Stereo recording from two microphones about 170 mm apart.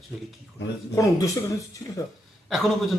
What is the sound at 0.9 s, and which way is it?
Speech, 20° left (ahead or behind).